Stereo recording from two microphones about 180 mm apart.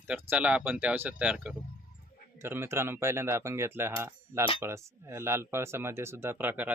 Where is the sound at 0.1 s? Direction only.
10° right (ahead or behind).